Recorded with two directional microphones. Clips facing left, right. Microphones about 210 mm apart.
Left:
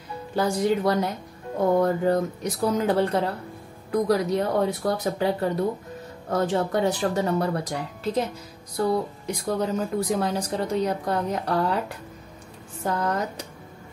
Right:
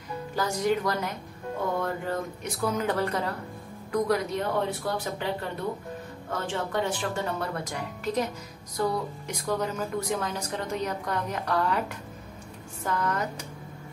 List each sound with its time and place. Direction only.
0.4 s speech: 30° left (ahead or behind)
12.8 s speech: 35° left (ahead or behind)